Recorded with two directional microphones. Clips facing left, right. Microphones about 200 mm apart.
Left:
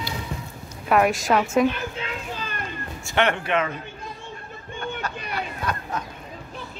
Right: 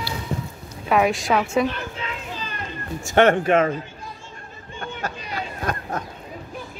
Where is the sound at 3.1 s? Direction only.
45° right (ahead or behind).